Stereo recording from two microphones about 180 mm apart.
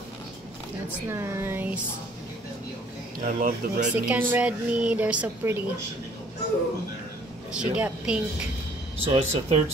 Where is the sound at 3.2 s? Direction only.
45° right (ahead or behind).